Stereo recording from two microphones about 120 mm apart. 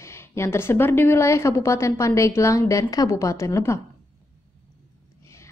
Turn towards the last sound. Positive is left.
turn(degrees=25)  # may be behind; listen again after turning